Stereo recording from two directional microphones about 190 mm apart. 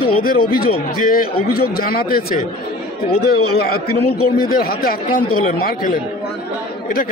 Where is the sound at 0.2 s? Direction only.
50° left (ahead or behind).